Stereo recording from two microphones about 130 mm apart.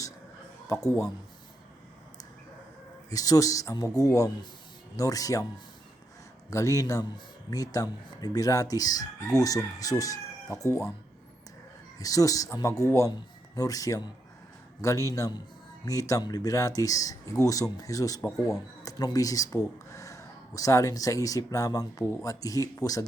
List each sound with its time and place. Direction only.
0.7 s chicken: 25° left (ahead or behind)
3.1 s chicken: 25° left (ahead or behind)
6.5 s chicken: 25° left (ahead or behind)
11.9 s chicken: 25° left (ahead or behind)
18.8 s speech: 30° left (ahead or behind)